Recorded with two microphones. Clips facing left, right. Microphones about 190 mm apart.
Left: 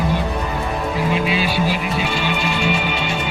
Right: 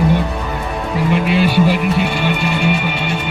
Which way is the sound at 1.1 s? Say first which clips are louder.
Right 9 dB; 60° right (ahead or behind).